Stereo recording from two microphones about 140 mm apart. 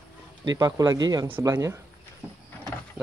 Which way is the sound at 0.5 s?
25° right (ahead or behind).